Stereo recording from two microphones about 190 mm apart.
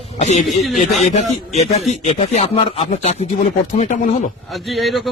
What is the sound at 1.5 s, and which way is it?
Speech, 35° left (ahead or behind).